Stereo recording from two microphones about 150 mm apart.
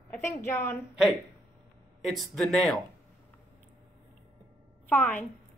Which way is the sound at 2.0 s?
Centre (ahead or behind).